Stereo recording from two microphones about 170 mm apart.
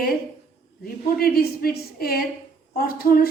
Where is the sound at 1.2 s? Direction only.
65° left (ahead or behind).